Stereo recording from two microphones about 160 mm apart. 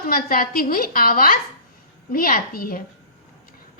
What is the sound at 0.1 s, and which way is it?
A woman's voice, 65° left (ahead or behind).